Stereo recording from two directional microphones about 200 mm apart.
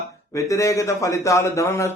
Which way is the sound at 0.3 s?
15° left (ahead or behind).